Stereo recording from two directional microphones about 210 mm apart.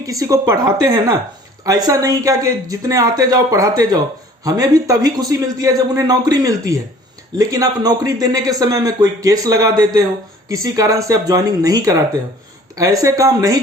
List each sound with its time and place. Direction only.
0.0 s a man's voice: 15° right (ahead or behind)